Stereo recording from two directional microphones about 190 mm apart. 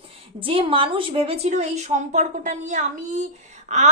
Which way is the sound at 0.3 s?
25° right (ahead or behind).